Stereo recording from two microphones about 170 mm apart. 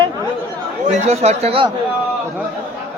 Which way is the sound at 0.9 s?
40° right (ahead or behind).